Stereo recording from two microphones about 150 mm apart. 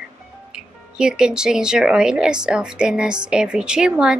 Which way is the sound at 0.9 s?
5° right (ahead or behind).